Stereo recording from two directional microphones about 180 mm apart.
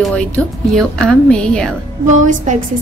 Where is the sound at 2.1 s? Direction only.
40° right (ahead or behind).